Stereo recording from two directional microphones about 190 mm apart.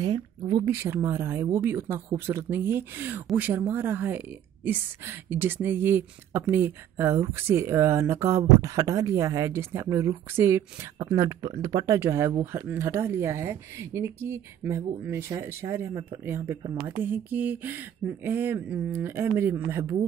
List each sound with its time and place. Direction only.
0.0 s speech: 25° right (ahead or behind)
0.7 s speech: 15° right (ahead or behind)